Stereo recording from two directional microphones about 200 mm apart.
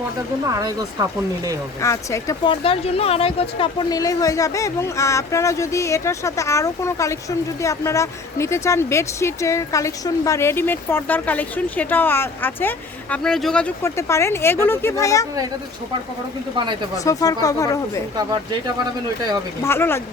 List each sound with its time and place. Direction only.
0.4 s speech: 15° right (ahead or behind)
1.8 s speech: 15° left (ahead or behind)
17.0 s speech: 15° left (ahead or behind)
19.6 s speech: 10° left (ahead or behind)